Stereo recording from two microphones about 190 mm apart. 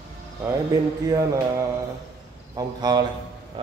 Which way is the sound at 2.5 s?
20° right (ahead or behind).